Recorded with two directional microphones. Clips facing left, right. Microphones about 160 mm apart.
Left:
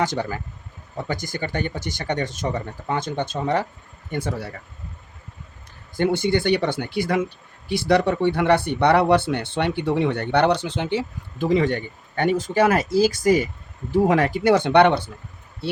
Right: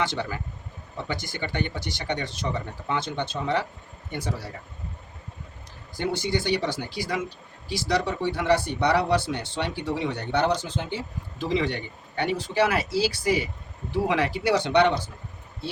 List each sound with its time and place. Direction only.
0.0 s speech: 45° left (ahead or behind)
6.0 s speech: 55° left (ahead or behind); by 11.0 s 75° left (ahead or behind)
11.3 s speech: 50° left (ahead or behind)